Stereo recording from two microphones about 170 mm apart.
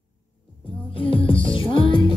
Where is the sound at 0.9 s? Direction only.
30° left (ahead or behind).